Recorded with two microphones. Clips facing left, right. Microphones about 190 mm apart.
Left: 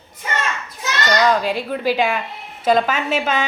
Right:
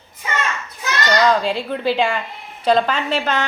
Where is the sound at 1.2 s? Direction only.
5° left (ahead or behind).